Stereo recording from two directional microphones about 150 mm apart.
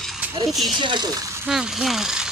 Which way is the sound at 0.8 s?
30° right (ahead or behind).